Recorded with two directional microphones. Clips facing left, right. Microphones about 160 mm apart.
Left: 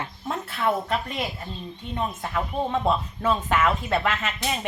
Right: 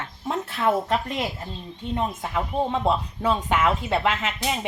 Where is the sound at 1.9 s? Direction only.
20° right (ahead or behind).